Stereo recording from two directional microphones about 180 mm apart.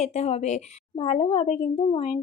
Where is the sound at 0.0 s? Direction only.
35° left (ahead or behind).